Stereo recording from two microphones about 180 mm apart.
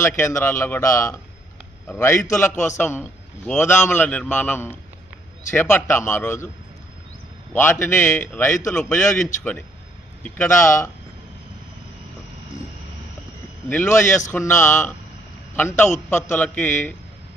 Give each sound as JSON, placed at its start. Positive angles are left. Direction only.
{"t": 0.0, "sound": "a man's voice", "side_deg": 15}
{"t": 7.5, "sound": "a man's voice", "side_deg": 15}
{"t": 13.7, "sound": "a man's voice", "side_deg": 10}